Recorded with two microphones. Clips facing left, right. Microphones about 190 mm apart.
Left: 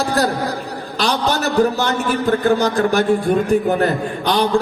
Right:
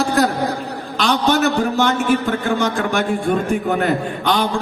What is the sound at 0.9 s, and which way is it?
A man's voice, 35° left (ahead or behind).